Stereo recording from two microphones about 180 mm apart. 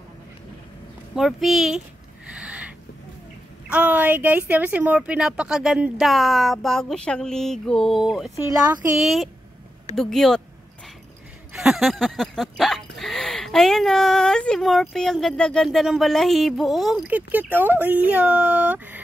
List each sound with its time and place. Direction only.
1.1 s speech: centre (ahead or behind)
2.3 s a sound: 5° right (ahead or behind)
3.6 s speech: 10° right (ahead or behind)
8.4 s speech: 15° right (ahead or behind)
8.9 s speech: centre (ahead or behind)
11.5 s speech: centre (ahead or behind)